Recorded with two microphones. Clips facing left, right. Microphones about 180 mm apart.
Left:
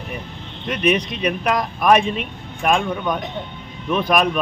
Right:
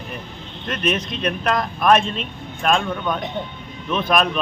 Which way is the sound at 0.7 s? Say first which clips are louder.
Left 4 dB; 10° left (ahead or behind).